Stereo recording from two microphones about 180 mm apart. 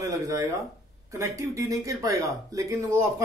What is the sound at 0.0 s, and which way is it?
Speech, 15° right (ahead or behind).